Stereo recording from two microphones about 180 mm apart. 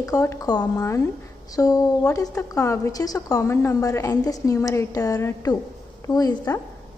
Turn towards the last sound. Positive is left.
turn(degrees=20)  # may be behind; listen again after turning